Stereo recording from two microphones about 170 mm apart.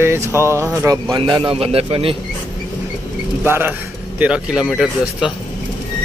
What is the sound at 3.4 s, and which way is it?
Speech, 15° right (ahead or behind).